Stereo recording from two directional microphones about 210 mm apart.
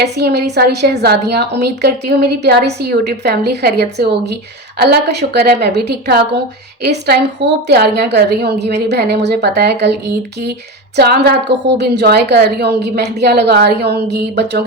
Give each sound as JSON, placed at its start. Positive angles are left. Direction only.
{"t": 0.0, "sound": "a woman's voice", "side_deg": -50}
{"t": 10.9, "sound": "a woman's voice", "side_deg": -50}